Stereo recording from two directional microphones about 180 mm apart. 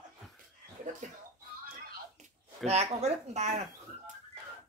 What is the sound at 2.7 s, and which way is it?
Speech, 35° right (ahead or behind).